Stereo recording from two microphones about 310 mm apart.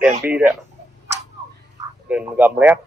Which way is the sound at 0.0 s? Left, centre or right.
Centre.